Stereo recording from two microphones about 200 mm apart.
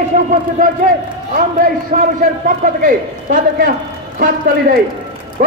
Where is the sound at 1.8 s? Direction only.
45° right (ahead or behind).